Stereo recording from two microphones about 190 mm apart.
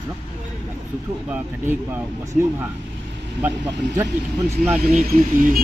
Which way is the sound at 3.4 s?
15° right (ahead or behind).